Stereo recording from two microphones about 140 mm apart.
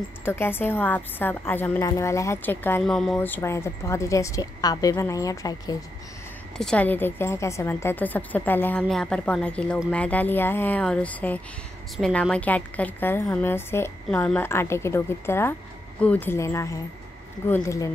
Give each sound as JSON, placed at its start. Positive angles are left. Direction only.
{"t": 0.2, "sound": "a woman's voice", "side_deg": 15}
{"t": 2.8, "sound": "speech", "side_deg": 0}
{"t": 3.2, "sound": "a woman's voice", "side_deg": 15}
{"t": 6.6, "sound": "a woman's voice", "side_deg": 10}
{"t": 8.8, "sound": "a woman's voice", "side_deg": 5}